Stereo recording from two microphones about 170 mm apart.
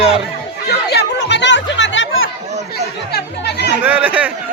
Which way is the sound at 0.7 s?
75° left (ahead or behind).